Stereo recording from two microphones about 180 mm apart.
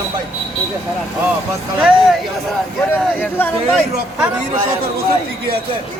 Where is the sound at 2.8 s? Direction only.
10° left (ahead or behind).